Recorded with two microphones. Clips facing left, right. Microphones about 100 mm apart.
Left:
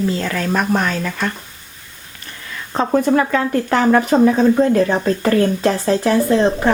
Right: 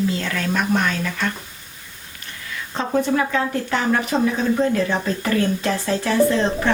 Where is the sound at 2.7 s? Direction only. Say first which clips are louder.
Left 5 dB; 45° left (ahead or behind).